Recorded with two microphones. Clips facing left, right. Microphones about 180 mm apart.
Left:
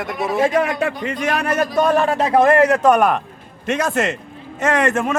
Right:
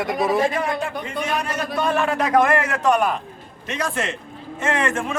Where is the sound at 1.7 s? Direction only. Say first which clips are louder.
Left 3 dB; 40° left (ahead or behind).